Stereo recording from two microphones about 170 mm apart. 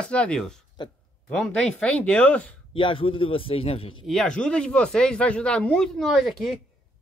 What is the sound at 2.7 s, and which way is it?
A man's voice, 30° left (ahead or behind).